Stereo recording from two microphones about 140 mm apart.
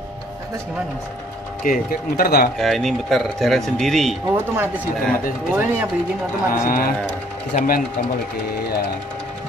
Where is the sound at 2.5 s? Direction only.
Centre (ahead or behind).